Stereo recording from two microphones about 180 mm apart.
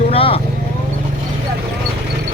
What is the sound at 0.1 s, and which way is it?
Vehicle, 30° left (ahead or behind).